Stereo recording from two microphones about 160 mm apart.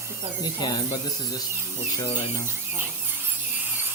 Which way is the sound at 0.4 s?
20° left (ahead or behind).